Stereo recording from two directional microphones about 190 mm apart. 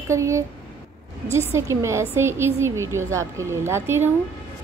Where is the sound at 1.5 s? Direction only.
15° right (ahead or behind).